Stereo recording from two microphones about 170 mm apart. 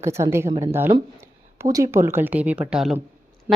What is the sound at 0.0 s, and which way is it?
A woman's voice, 15° right (ahead or behind).